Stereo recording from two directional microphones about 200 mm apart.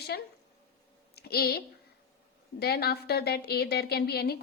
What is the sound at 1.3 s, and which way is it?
A woman's voice, 50° left (ahead or behind).